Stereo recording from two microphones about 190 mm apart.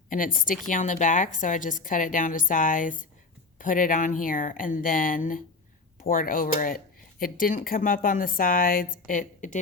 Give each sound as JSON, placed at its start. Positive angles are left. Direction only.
{"t": 0.1, "sound": "speech", "side_deg": 45}